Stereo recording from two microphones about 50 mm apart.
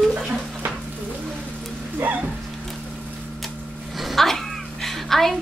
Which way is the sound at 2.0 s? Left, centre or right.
Right.